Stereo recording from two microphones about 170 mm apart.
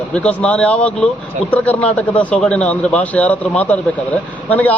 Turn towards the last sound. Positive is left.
turn(degrees=10)  # may be behind; listen again after turning